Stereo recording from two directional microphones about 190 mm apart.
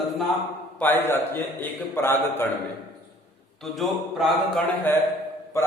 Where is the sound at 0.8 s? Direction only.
10° left (ahead or behind).